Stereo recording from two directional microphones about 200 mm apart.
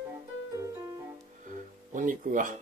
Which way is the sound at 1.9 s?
40° right (ahead or behind).